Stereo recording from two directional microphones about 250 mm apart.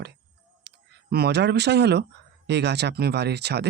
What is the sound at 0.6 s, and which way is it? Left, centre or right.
Speech, right.